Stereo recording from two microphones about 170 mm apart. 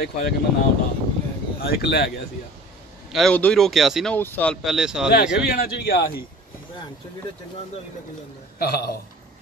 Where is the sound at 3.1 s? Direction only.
Centre (ahead or behind).